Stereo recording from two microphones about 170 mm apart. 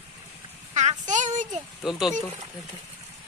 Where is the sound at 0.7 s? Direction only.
45° right (ahead or behind).